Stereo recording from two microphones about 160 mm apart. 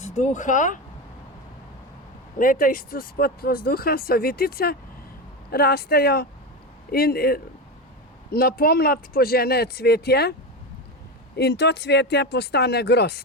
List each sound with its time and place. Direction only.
0.0 s speech: 50° left (ahead or behind)
2.4 s speech: 60° left (ahead or behind); by 10.3 s 85° left
11.3 s speech: 90° left